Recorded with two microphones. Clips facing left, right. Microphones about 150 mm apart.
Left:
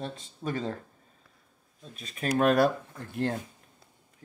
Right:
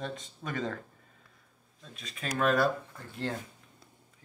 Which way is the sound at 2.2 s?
50° left (ahead or behind).